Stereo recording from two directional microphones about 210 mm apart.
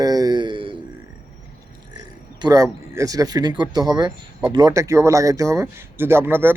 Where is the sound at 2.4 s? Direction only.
15° right (ahead or behind).